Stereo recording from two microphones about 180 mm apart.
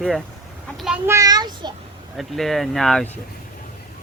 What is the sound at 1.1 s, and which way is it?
Child singing, 20° right (ahead or behind).